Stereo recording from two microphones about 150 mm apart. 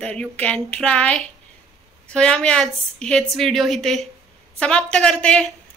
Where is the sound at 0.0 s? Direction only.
5° left (ahead or behind).